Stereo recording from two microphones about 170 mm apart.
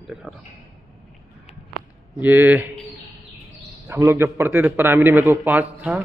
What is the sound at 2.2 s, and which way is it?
A man's voice, 10° right (ahead or behind).